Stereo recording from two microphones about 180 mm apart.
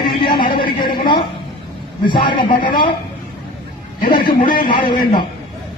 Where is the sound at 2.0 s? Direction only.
25° left (ahead or behind).